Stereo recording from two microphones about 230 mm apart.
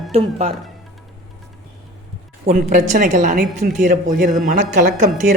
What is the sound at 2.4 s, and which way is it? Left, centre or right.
Speech, right.